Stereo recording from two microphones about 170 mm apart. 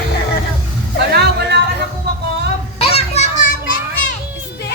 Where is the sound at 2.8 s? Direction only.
35° left (ahead or behind).